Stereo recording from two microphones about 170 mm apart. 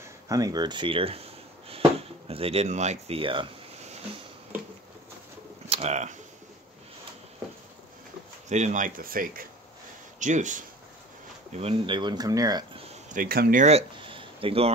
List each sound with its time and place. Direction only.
0.0 s speech: 20° right (ahead or behind)
5.7 s speech: 40° right (ahead or behind)
8.5 s speech: 45° right (ahead or behind)
10.1 s speech: 45° right (ahead or behind)
11.5 s speech: 35° right (ahead or behind)
13.1 s speech: 60° right (ahead or behind); by 14.7 s 35° right (ahead or behind)